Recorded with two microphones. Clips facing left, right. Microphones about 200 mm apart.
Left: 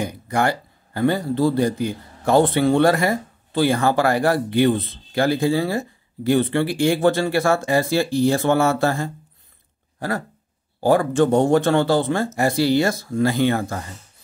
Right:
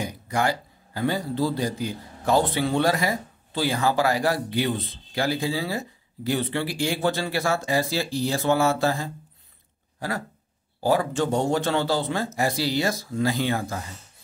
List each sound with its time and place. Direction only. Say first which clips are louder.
0.0 s a man's voice: left 4 dB; 55° left (ahead or behind)
9.9 s a sound: left 5 dB; 55° left (ahead or behind)
10.8 s speech: left 6 dB; 55° left (ahead or behind)